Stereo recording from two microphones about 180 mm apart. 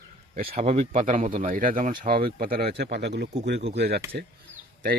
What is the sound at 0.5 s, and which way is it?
Speech, 35° right (ahead or behind).